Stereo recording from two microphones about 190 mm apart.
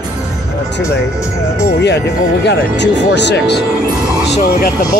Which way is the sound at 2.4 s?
65° left (ahead or behind).